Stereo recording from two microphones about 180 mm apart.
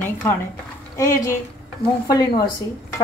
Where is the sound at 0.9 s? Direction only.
15° left (ahead or behind).